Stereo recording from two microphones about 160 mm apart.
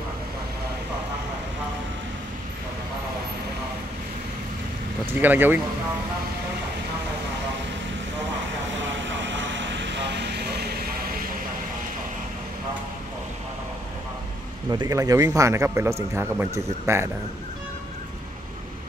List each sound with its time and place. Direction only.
5.2 s speech: 10° right (ahead or behind)
9.7 s vehicle: 90° right
14.7 s speech: 25° right (ahead or behind)